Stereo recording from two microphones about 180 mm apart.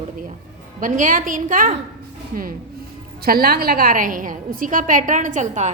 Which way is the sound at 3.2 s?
55° right (ahead or behind).